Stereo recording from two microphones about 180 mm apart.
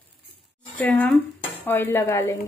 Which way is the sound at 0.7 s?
10° left (ahead or behind).